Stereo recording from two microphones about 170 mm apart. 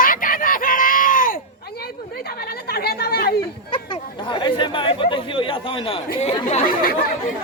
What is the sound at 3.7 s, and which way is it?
Chatter, 30° left (ahead or behind).